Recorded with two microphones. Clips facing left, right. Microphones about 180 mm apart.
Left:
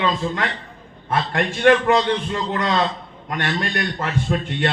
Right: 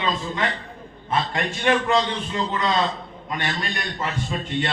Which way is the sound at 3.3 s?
55° left (ahead or behind).